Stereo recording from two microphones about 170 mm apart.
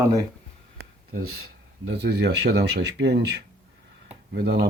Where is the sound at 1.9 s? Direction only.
75° right (ahead or behind).